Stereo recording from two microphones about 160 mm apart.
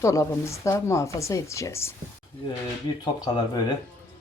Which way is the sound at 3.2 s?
25° left (ahead or behind).